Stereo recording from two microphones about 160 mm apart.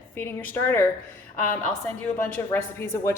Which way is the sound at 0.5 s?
15° left (ahead or behind).